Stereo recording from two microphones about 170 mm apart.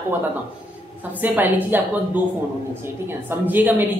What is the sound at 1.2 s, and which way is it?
Speech, 10° right (ahead or behind).